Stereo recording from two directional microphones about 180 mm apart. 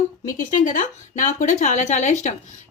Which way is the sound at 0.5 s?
45° left (ahead or behind).